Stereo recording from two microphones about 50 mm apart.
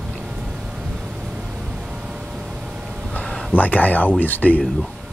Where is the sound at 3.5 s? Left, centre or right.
Left.